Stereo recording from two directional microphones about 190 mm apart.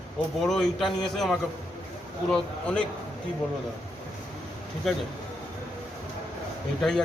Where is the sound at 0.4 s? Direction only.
Centre (ahead or behind).